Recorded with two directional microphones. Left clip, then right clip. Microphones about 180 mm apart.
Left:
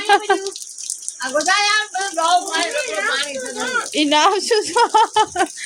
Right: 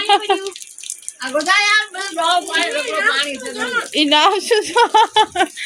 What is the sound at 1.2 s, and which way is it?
Speech, 45° right (ahead or behind).